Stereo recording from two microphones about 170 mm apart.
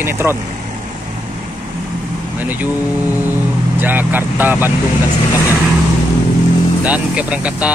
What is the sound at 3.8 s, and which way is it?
Music, 10° right (ahead or behind).